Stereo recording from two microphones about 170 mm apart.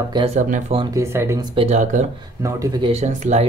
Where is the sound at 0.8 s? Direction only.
20° right (ahead or behind).